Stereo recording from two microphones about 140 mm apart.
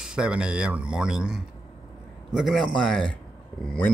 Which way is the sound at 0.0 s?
5° right (ahead or behind).